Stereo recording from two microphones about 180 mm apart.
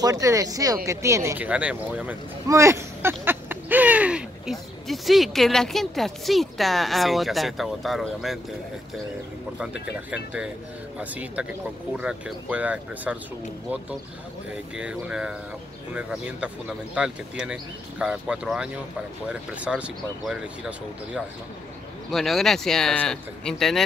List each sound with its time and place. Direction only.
0.0 s speech: 20° right (ahead or behind); by 8.4 s centre (ahead or behind)
10.1 s speech: 5° right (ahead or behind)
14.8 s speech: 5° right (ahead or behind)
22.1 s speech: centre (ahead or behind)